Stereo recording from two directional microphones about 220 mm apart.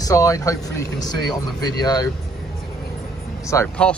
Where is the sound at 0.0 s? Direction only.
15° left (ahead or behind).